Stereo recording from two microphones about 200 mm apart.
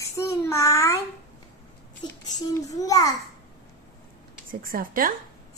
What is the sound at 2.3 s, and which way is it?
Speech, 15° left (ahead or behind).